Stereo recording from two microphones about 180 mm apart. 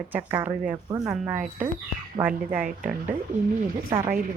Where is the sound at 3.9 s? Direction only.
10° right (ahead or behind).